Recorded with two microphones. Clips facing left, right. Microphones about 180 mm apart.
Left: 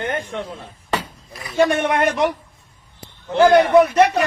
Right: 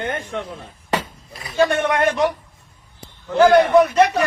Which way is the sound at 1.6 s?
15° left (ahead or behind).